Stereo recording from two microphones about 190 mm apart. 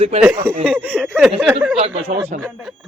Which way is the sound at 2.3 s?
45° right (ahead or behind).